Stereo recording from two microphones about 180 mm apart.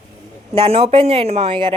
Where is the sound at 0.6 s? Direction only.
35° right (ahead or behind).